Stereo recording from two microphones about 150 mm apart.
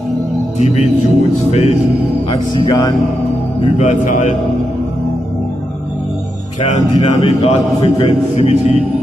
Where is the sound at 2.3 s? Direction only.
30° left (ahead or behind).